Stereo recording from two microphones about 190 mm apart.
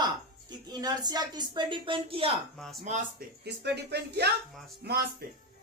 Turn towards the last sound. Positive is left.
turn(degrees=-55)  # may be behind; listen again after turning